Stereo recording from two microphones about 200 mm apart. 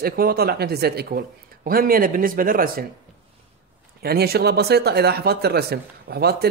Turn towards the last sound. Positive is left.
turn(degrees=-55)  # may be behind; listen again after turning